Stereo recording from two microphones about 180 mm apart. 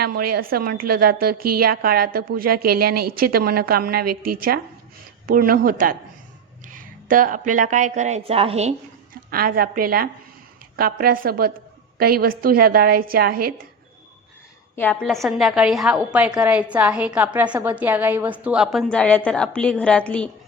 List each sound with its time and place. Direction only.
0.0 s a woman's voice: 55° right (ahead or behind); by 8.7 s 35° right (ahead or behind)
9.3 s a woman's voice: 55° right (ahead or behind)
15.0 s a woman's voice: centre (ahead or behind)